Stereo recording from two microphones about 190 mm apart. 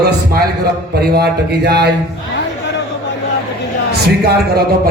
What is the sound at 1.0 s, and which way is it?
Speech, 55° right (ahead or behind).